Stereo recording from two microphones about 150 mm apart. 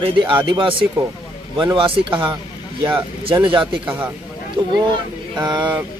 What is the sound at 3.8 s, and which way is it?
Speech, 10° right (ahead or behind).